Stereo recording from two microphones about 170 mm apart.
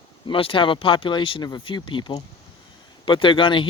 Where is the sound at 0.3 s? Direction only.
30° left (ahead or behind).